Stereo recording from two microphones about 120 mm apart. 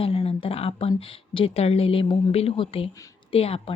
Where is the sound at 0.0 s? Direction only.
60° left (ahead or behind).